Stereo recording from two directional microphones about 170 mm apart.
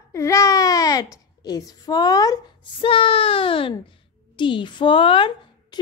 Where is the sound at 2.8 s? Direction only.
35° left (ahead or behind).